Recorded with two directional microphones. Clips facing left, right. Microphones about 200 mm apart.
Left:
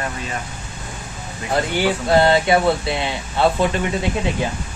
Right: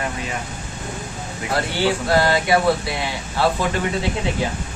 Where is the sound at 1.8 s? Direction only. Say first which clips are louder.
Left 2 dB; 25° left (ahead or behind).